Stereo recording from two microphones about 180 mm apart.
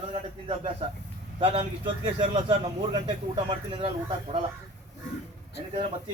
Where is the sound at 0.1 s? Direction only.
30° right (ahead or behind).